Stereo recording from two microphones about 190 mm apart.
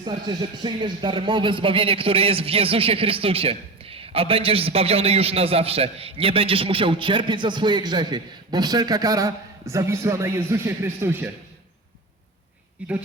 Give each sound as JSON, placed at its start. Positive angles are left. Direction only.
{"t": 0.0, "sound": "speech", "side_deg": -25}